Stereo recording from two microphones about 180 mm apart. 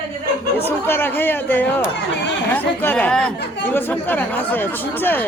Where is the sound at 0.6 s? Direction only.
10° left (ahead or behind).